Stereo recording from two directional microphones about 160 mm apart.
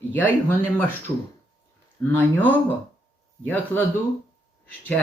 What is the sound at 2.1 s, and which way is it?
Speech, 10° left (ahead or behind).